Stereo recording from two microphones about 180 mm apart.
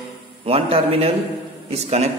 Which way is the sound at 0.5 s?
30° right (ahead or behind).